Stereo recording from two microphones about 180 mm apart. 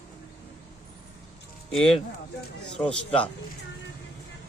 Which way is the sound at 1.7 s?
5° left (ahead or behind).